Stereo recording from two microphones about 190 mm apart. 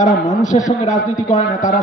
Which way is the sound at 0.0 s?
40° left (ahead or behind).